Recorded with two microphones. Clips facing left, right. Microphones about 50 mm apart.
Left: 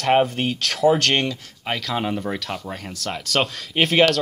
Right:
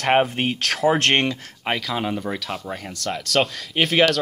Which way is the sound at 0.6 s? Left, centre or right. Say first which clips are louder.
Left 2 dB; centre.